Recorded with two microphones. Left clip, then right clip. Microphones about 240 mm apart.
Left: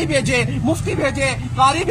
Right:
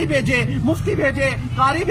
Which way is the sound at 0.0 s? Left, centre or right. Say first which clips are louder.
Left 1 dB; centre.